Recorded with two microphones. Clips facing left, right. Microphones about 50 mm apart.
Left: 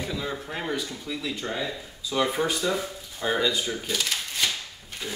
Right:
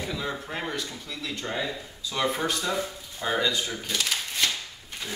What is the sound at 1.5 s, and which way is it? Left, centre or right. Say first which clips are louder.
Speech: even; centre.